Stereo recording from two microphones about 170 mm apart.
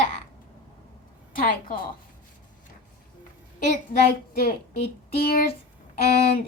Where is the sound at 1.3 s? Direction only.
55° left (ahead or behind).